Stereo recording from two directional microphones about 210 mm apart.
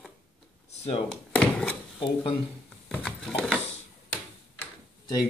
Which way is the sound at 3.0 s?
5° left (ahead or behind).